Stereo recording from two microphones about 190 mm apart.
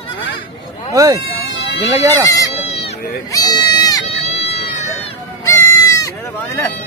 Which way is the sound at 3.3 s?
20° left (ahead or behind).